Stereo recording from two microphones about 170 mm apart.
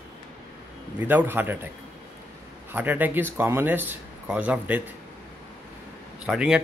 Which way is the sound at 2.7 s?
10° right (ahead or behind).